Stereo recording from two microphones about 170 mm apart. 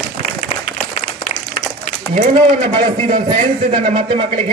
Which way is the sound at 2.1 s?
50° right (ahead or behind).